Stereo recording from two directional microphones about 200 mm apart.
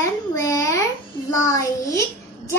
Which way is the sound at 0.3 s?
15° left (ahead or behind).